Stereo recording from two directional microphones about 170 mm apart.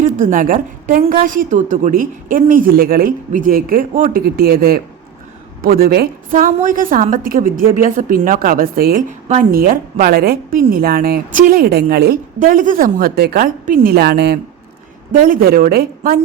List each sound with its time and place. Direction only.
0.0 s a woman's voice: 50° right (ahead or behind); by 14.3 s 70° right (ahead or behind)
15.2 s a woman's voice: 60° right (ahead or behind)